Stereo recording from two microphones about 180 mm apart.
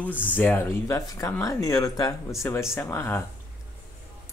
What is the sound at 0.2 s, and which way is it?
Speech, 10° left (ahead or behind).